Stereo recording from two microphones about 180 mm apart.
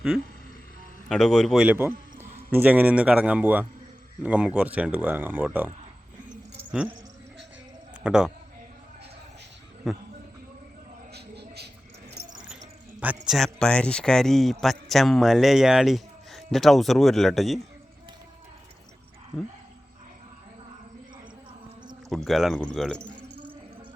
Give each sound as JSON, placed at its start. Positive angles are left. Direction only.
{"t": 1.0, "sound": "a man's voice", "side_deg": 0}
{"t": 8.0, "sound": "a man's voice", "side_deg": -5}
{"t": 9.8, "sound": "a man's voice", "side_deg": 0}
{"t": 11.1, "sound": "a sound", "side_deg": -65}
{"t": 13.2, "sound": "a man's voice", "side_deg": 0}
{"t": 22.1, "sound": "a man's voice", "side_deg": 0}